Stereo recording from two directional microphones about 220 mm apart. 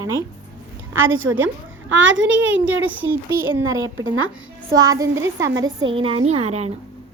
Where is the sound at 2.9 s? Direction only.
10° right (ahead or behind).